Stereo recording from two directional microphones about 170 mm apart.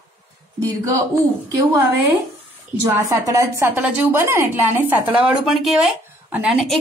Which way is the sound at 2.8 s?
20° right (ahead or behind).